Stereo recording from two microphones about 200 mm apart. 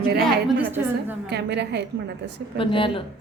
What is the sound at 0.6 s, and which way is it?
Speech, 10° right (ahead or behind).